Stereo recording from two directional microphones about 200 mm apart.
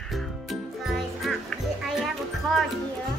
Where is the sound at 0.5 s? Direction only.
Centre (ahead or behind).